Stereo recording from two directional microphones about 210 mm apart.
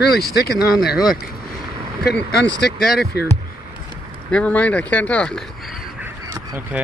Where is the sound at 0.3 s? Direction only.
50° left (ahead or behind).